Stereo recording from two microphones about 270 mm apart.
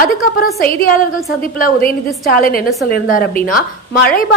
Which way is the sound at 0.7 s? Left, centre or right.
Left.